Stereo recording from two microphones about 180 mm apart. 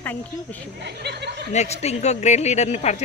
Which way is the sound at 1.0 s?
70° right (ahead or behind).